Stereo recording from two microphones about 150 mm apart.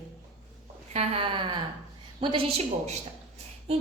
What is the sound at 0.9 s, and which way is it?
Speech, 35° right (ahead or behind).